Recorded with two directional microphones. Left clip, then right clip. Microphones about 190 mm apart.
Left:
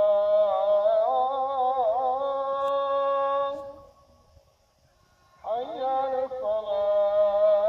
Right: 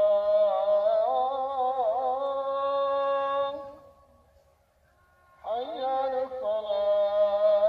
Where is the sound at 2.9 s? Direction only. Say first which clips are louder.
Left 2 dB; 15° right (ahead or behind).